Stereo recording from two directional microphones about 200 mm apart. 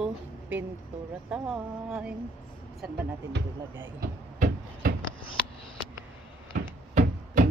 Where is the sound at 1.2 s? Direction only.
5° right (ahead or behind).